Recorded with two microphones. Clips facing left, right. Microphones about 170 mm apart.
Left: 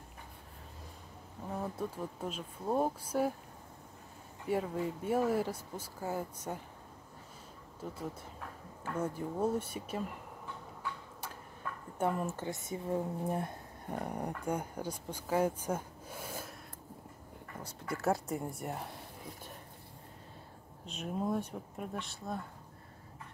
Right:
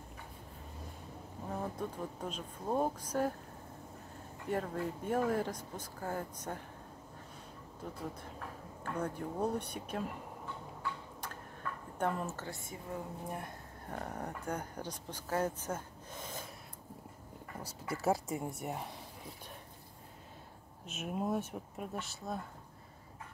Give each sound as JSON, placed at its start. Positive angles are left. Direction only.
{"t": 1.5, "sound": "speech", "side_deg": 5}
{"t": 4.5, "sound": "speech", "side_deg": 5}
{"t": 8.8, "sound": "speech", "side_deg": 5}
{"t": 10.8, "sound": "tick-tock", "side_deg": 10}
{"t": 12.0, "sound": "speech", "side_deg": 10}
{"t": 12.6, "sound": "speech", "side_deg": 25}
{"t": 13.8, "sound": "speech", "side_deg": 15}
{"t": 17.9, "sound": "speech", "side_deg": 0}
{"t": 20.8, "sound": "speech", "side_deg": -5}